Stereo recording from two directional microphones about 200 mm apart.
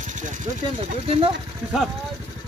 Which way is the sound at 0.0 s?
40° right (ahead or behind).